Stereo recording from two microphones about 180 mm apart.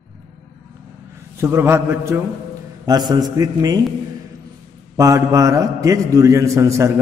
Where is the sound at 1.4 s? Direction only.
15° right (ahead or behind).